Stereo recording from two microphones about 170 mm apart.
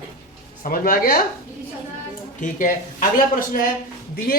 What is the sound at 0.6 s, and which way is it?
Speech, 60° left (ahead or behind).